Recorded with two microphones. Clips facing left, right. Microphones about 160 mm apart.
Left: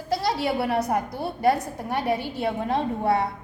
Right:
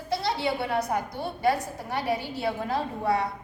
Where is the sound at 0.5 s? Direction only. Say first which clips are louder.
Left 4 dB; 30° left (ahead or behind).